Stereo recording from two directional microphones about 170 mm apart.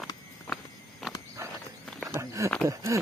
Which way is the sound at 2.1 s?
20° right (ahead or behind).